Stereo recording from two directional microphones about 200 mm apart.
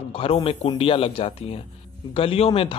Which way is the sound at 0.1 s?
30° left (ahead or behind).